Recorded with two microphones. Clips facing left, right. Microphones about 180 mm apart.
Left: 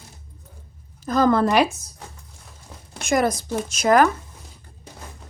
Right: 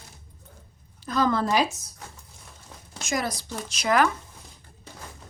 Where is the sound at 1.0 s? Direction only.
45° left (ahead or behind); by 1.6 s 60° left (ahead or behind).